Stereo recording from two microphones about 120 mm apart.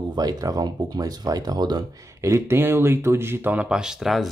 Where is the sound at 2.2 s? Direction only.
25° right (ahead or behind); by 4.3 s centre (ahead or behind).